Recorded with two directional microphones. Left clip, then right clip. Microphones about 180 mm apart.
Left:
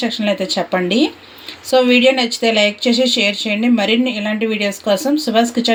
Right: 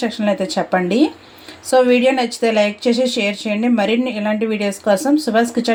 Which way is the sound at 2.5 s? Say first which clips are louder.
Left 1 dB; 30° right (ahead or behind).